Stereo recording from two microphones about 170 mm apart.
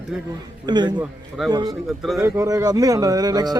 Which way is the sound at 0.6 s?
25° right (ahead or behind).